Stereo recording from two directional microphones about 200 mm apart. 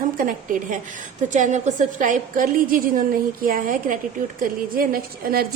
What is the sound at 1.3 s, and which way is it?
A woman's voice, 35° right (ahead or behind).